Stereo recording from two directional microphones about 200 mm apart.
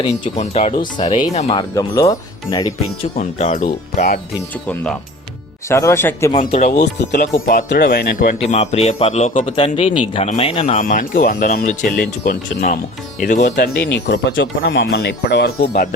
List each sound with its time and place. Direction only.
0.0 s speech: 30° left (ahead or behind)
1.5 s speech: 20° left (ahead or behind)
3.2 s speech: 35° left (ahead or behind)
5.6 s speech: 15° left (ahead or behind)
6.4 s speech: 40° left (ahead or behind)
7.4 s speech: 50° left (ahead or behind)
8.4 s speech: 35° left (ahead or behind)
13.6 s speech: 60° left (ahead or behind)